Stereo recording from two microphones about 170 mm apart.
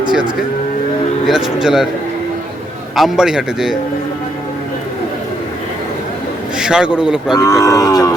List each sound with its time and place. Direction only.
1.3 s a man's voice: 5° right (ahead or behind)
2.9 s a man's voice: centre (ahead or behind)
6.6 s a man's voice: 5° right (ahead or behind)
7.3 s livestock: 20° left (ahead or behind)